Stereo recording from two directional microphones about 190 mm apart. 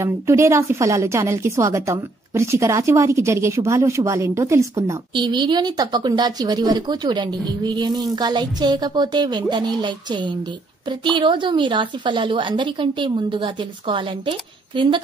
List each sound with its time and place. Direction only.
0.0 s a woman's voice: 15° right (ahead or behind)